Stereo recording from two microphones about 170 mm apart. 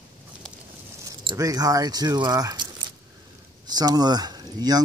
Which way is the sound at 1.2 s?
20° right (ahead or behind).